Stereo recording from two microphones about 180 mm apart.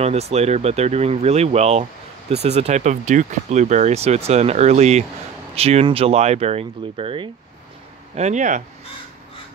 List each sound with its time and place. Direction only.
0.0 s speech: 35° right (ahead or behind)
8.1 s speech: 40° right (ahead or behind)